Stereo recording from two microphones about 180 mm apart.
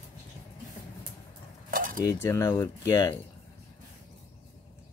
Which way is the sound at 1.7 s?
50° right (ahead or behind).